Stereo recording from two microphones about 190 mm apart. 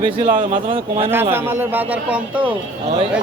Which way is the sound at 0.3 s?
45° right (ahead or behind).